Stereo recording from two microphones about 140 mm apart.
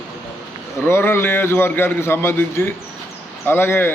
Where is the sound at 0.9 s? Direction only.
15° left (ahead or behind).